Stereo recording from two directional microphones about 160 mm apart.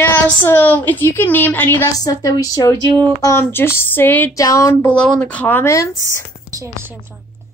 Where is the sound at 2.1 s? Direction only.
20° left (ahead or behind).